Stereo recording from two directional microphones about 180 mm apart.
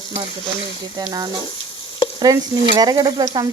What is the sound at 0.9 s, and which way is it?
Speech, 20° right (ahead or behind).